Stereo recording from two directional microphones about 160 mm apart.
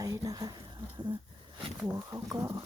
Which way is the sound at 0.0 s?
20° right (ahead or behind).